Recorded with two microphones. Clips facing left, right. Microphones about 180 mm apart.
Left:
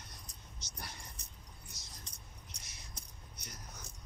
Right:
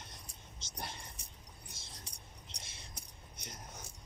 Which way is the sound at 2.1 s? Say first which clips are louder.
Right 1 dB; 10° right (ahead or behind).